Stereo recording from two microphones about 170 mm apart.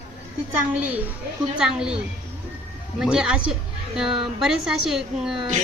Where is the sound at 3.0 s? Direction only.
5° right (ahead or behind).